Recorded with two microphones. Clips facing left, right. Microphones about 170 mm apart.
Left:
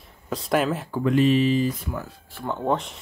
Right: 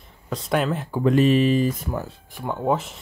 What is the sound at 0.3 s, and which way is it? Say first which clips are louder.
Speech: even; centre (ahead or behind).